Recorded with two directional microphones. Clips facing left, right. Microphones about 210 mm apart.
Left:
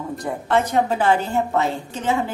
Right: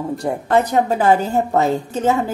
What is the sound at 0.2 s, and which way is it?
A woman's voice, 40° right (ahead or behind).